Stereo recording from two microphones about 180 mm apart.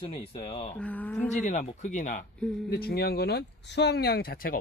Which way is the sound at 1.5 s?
45° left (ahead or behind).